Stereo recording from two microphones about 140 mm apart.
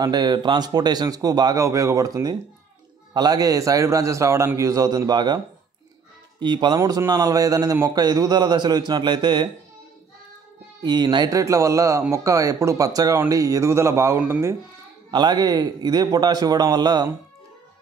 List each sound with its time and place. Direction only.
0.0 s a man's voice: 30° right (ahead or behind)
6.4 s speech: 30° right (ahead or behind)
6.8 s a man's voice: 20° right (ahead or behind)
10.8 s a man's voice: 30° right (ahead or behind); by 14.6 s 15° right (ahead or behind)
15.0 s a man's voice: 30° right (ahead or behind)